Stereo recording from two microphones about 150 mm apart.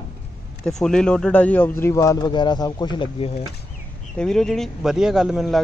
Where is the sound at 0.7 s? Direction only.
5° left (ahead or behind); by 3.4 s 40° left (ahead or behind).